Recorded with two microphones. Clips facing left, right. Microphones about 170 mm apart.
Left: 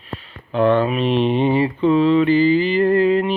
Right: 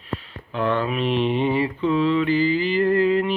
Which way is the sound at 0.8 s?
20° left (ahead or behind).